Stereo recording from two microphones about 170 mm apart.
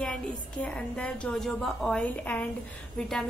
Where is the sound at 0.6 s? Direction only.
5° left (ahead or behind).